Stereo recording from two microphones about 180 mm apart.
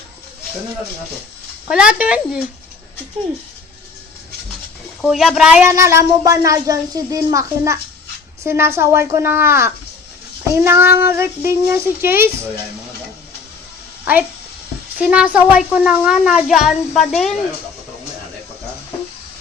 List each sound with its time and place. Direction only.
1.6 s speech: 5° right (ahead or behind)
5.0 s speech: centre (ahead or behind)
5.7 s speech: 15° right (ahead or behind)
14.0 s a sound: 10° right (ahead or behind)
14.9 s speech: 5° right (ahead or behind)